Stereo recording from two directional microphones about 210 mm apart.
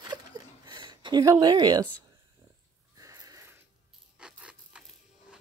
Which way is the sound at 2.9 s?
15° right (ahead or behind).